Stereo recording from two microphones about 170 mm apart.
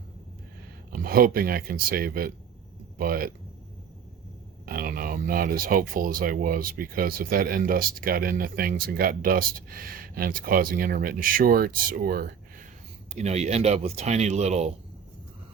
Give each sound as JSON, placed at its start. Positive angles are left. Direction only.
{"t": 0.9, "sound": "speech", "side_deg": -60}
{"t": 4.6, "sound": "speech", "side_deg": -60}
{"t": 13.1, "sound": "speech", "side_deg": -40}